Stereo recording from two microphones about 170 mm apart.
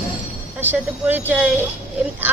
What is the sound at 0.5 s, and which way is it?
Speech, 10° right (ahead or behind).